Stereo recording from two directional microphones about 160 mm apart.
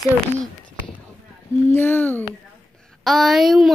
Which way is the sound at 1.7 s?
10° left (ahead or behind).